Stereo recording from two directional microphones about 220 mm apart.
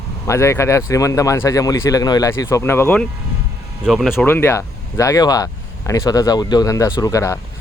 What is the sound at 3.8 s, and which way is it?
Speech, centre (ahead or behind).